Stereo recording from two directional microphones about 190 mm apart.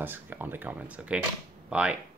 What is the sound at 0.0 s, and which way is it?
Speech, 10° right (ahead or behind).